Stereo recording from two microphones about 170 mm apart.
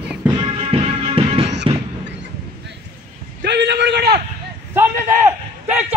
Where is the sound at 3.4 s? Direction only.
90° right.